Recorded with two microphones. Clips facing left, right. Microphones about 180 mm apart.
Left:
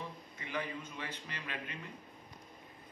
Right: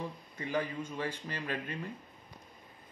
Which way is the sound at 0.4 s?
45° right (ahead or behind).